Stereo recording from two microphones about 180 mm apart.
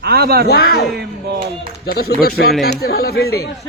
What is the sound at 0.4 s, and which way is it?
Speech, 60° left (ahead or behind).